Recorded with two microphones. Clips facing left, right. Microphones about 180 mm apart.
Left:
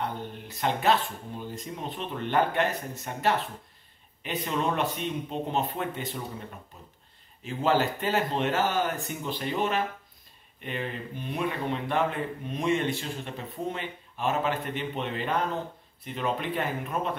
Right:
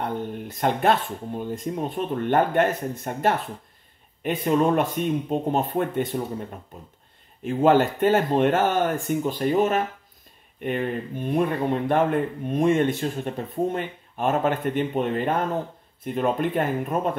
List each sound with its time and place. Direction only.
0.0 s speech: 50° right (ahead or behind)
7.4 s speech: 55° right (ahead or behind)